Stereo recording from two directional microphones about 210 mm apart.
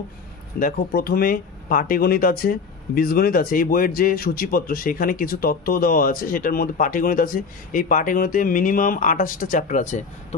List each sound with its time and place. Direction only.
0.6 s speech: 45° left (ahead or behind)